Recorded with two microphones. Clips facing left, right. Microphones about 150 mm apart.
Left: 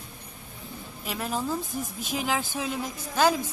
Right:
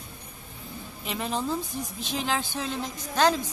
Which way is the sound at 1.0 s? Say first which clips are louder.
Even; centre (ahead or behind).